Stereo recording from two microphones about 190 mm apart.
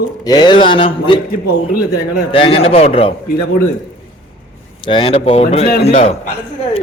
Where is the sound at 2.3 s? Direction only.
30° left (ahead or behind).